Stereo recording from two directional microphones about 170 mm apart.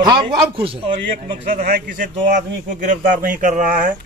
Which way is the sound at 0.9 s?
50° right (ahead or behind).